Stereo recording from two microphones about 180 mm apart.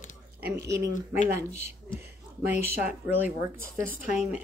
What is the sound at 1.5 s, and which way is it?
Speech, 40° left (ahead or behind).